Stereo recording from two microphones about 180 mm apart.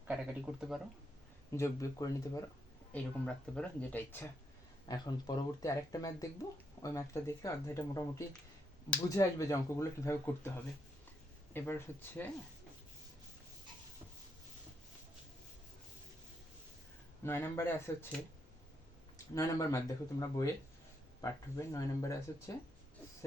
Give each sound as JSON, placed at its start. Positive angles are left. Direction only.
{"t": 0.1, "sound": "speech", "side_deg": -5}
{"t": 1.5, "sound": "speech", "side_deg": 15}
{"t": 2.9, "sound": "speech", "side_deg": 5}
{"t": 4.9, "sound": "speech", "side_deg": 20}
{"t": 9.0, "sound": "speech", "side_deg": 15}
{"t": 11.5, "sound": "speech", "side_deg": 10}
{"t": 17.2, "sound": "speech", "side_deg": 15}
{"t": 19.3, "sound": "speech", "side_deg": 15}